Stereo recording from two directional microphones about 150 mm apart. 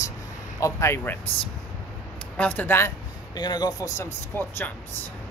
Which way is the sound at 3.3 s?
25° left (ahead or behind).